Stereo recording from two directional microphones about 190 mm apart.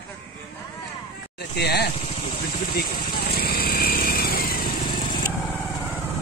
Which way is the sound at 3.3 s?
55° left (ahead or behind).